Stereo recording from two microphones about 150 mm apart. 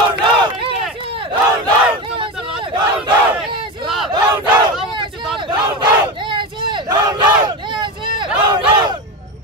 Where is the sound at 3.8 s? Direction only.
Centre (ahead or behind).